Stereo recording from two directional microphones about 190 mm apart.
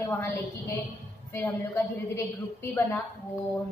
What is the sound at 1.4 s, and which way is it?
A woman's voice, 10° left (ahead or behind).